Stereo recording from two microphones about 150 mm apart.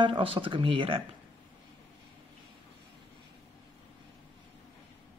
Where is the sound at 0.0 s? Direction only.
35° right (ahead or behind).